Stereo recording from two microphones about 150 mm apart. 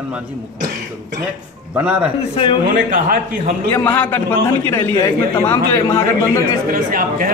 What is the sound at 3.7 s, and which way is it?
A man's voice, 15° left (ahead or behind).